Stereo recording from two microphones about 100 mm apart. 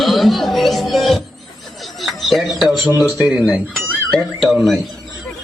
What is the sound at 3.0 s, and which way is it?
Speech, 35° left (ahead or behind).